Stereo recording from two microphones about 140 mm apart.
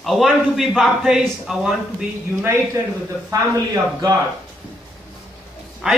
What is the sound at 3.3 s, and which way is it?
Speech, 25° right (ahead or behind).